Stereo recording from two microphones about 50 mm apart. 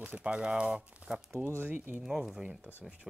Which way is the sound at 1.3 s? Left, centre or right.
Right.